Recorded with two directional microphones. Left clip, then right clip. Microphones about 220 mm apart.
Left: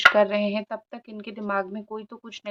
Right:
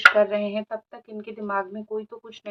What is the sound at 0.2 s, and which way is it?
A woman's voice, 45° left (ahead or behind).